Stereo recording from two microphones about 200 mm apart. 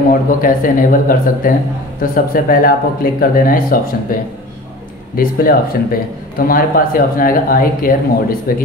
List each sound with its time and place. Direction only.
0.1 s a man's voice: 45° left (ahead or behind)